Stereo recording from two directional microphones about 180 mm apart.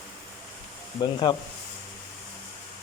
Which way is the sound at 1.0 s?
25° left (ahead or behind).